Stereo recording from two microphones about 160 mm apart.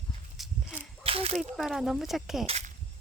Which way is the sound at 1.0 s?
35° right (ahead or behind).